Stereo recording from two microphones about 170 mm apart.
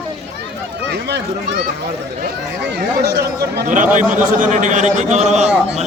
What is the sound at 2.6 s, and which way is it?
Speech, 80° right.